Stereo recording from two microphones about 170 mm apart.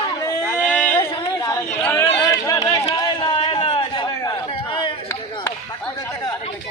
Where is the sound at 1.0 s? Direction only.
30° left (ahead or behind).